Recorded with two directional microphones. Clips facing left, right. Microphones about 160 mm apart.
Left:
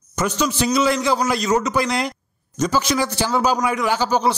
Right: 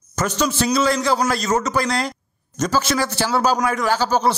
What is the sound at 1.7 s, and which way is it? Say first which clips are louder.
A man's voice: even; 20° left (ahead or behind).